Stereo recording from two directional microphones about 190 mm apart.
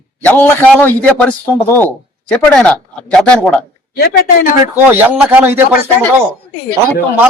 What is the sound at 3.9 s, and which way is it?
Speech, 55° left (ahead or behind).